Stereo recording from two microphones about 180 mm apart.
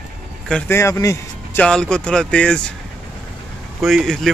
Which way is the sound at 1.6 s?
5° left (ahead or behind).